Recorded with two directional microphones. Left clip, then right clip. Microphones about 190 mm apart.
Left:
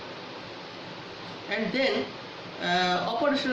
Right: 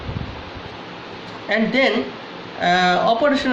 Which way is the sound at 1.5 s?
55° right (ahead or behind).